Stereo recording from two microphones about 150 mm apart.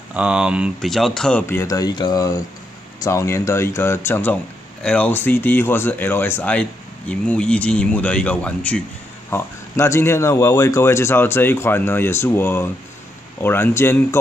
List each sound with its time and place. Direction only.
0.1 s speech: 5° right (ahead or behind)
1.4 s speech: 15° left (ahead or behind)